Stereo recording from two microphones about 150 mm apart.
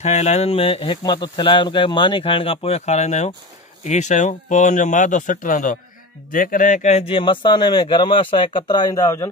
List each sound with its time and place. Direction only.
0.0 s a man's voice: 50° left (ahead or behind); by 9.3 s 20° left (ahead or behind)